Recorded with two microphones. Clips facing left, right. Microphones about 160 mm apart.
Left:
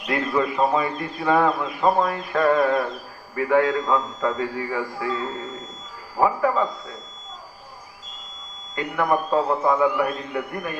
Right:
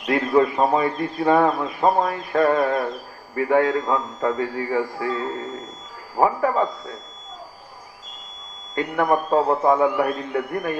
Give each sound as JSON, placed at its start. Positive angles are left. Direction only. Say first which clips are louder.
{"t": 0.1, "sound": "speech", "louder": "right 5 dB", "side_deg": -35}
{"t": 8.7, "sound": "speech", "louder": "right 2 dB", "side_deg": -30}